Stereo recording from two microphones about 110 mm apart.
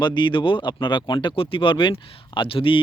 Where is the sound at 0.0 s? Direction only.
45° left (ahead or behind).